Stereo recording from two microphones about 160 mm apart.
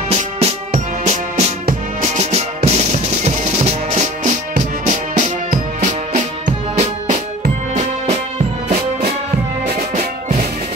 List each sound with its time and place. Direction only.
0.1 s music: 40° right (ahead or behind)